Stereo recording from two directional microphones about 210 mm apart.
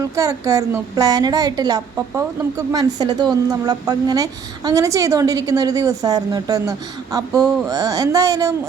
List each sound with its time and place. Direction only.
0.0 s a woman's voice: 15° right (ahead or behind)